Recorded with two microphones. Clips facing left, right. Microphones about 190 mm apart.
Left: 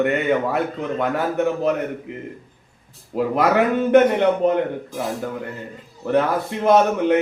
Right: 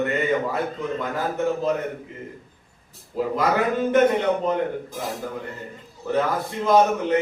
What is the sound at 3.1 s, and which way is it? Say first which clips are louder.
A man's voice: left 4 dB; 65° left (ahead or behind).